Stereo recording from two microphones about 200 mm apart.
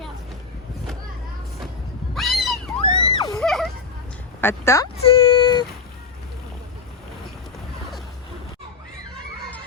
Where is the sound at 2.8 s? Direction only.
20° left (ahead or behind).